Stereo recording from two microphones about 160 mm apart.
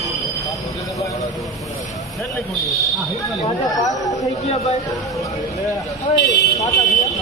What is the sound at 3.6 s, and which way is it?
Speech, 20° left (ahead or behind).